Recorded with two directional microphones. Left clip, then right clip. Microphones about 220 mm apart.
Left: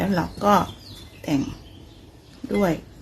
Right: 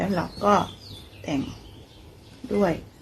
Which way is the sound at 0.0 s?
20° left (ahead or behind).